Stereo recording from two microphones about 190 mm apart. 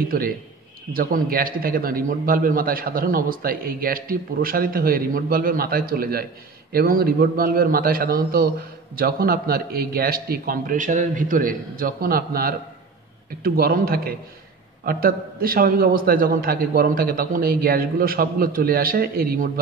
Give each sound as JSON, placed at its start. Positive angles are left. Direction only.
{"t": 0.0, "sound": "a man's voice", "side_deg": -50}